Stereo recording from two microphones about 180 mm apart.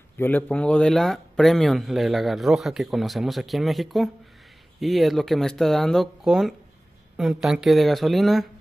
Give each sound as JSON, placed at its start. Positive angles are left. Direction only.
{"t": 0.2, "sound": "speech", "side_deg": 10}